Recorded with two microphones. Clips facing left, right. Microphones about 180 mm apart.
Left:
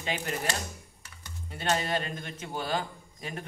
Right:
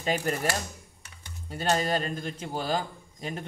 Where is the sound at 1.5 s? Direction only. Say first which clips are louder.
Right 3 dB; 40° right (ahead or behind).